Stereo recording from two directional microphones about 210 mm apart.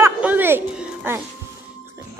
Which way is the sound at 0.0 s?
10° right (ahead or behind).